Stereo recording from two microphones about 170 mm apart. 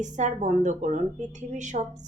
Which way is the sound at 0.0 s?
45° right (ahead or behind).